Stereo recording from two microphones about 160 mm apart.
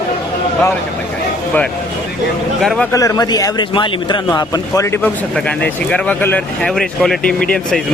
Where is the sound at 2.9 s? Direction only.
20° left (ahead or behind).